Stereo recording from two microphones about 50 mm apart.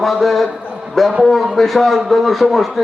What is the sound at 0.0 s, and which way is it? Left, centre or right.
A man's voice, centre.